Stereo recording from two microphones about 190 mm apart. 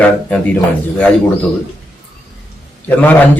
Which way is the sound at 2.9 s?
10° left (ahead or behind).